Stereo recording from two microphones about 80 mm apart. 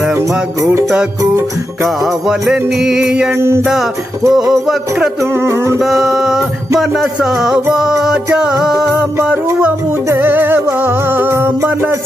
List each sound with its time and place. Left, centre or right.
0.6 s music: right
2.0 s music: centre
3.3 s music: right
4.3 s music: centre
5.2 s music: right
5.8 s music: centre
10.1 s music: right